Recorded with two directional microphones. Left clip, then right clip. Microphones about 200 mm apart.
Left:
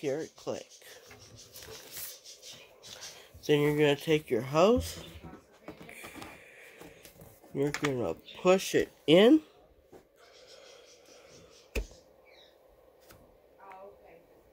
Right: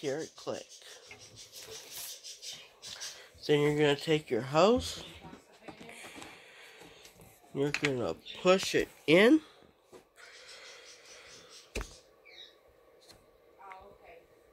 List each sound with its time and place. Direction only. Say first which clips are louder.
0.0 s speech: left 2 dB; 15° left (ahead or behind)
3.4 s speech: left 1 dB; 10° left (ahead or behind)
5.9 s a sound: left 2 dB; 10° left (ahead or behind)
7.5 s speech: even; 5° left (ahead or behind)
8.5 s speech: left 1 dB; 20° left (ahead or behind)
10.6 s a sound: right 3 dB; 5° right (ahead or behind)